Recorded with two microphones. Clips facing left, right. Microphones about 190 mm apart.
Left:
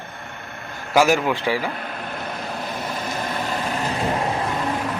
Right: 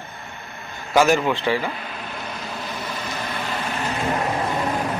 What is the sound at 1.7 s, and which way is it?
Vehicle, 50° left (ahead or behind).